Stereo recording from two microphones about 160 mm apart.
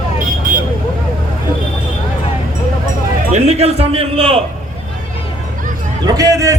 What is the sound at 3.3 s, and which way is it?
A man's voice, 45° right (ahead or behind).